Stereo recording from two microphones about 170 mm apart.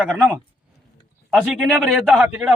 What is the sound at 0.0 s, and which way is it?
A man's voice, 5° right (ahead or behind).